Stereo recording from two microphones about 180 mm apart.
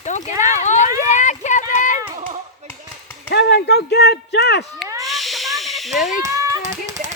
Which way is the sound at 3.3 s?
70° left (ahead or behind).